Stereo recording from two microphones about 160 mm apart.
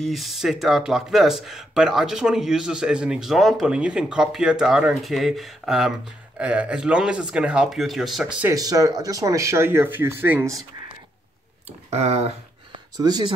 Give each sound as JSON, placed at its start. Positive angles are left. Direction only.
{"t": 0.0, "sound": "speech", "side_deg": 0}
{"t": 8.5, "sound": "speech", "side_deg": -20}
{"t": 11.9, "sound": "speech", "side_deg": -40}
{"t": 12.7, "sound": "speech", "side_deg": -25}